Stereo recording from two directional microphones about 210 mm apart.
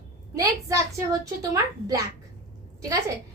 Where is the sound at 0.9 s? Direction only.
15° right (ahead or behind).